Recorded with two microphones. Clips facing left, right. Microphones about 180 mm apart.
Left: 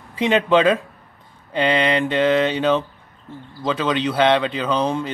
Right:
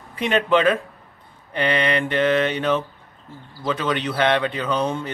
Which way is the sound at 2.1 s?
20° left (ahead or behind).